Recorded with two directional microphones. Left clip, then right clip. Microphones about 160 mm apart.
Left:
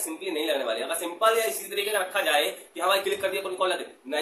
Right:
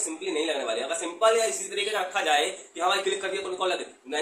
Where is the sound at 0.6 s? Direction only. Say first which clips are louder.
Even; 25° left (ahead or behind).